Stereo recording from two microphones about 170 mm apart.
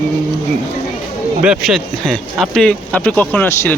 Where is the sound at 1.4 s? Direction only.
5° right (ahead or behind).